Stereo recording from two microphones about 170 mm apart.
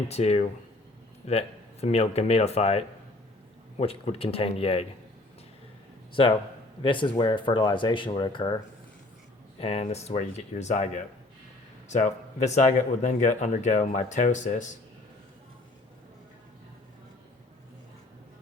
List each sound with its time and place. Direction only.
0.1 s speech: 40° left (ahead or behind)
6.8 s speech: 30° left (ahead or behind)
9.6 s speech: 40° left (ahead or behind)